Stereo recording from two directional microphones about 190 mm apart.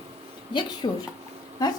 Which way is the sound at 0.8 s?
25° left (ahead or behind).